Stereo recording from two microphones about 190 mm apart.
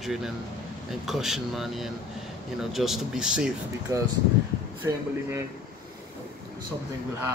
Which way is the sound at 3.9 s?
20° right (ahead or behind).